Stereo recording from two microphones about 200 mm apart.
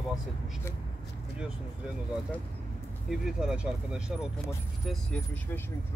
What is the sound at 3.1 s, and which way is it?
Speech, centre (ahead or behind).